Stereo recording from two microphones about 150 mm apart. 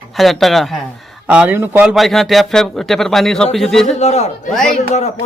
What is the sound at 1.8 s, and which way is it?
Speech, centre (ahead or behind).